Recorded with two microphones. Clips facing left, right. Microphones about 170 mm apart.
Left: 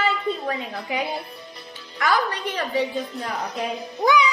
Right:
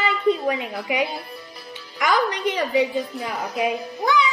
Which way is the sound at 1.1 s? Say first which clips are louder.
Left 1 dB; centre (ahead or behind).